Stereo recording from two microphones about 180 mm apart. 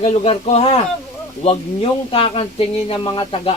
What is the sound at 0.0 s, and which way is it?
A man's voice, 35° left (ahead or behind).